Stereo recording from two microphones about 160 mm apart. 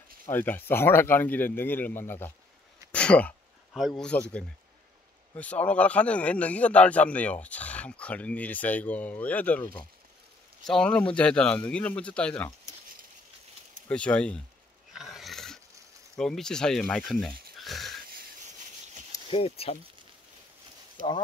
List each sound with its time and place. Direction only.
0.3 s speech: 10° left (ahead or behind)
13.8 s speech: 10° left (ahead or behind)
14.9 s a sound: centre (ahead or behind)
16.2 s speech: 5° left (ahead or behind)
19.3 s speech: 35° left (ahead or behind)